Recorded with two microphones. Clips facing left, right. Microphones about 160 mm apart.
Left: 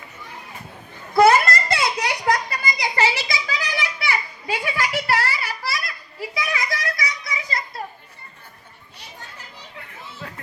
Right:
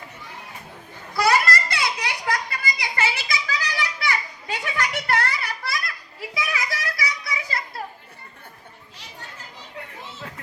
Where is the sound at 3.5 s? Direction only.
15° left (ahead or behind); by 7.6 s 5° right (ahead or behind).